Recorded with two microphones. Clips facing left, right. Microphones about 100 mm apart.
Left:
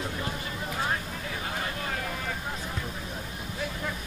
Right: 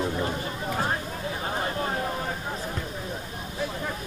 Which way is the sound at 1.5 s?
30° right (ahead or behind).